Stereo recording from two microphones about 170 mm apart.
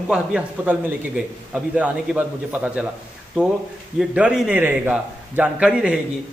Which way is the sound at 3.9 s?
5° right (ahead or behind).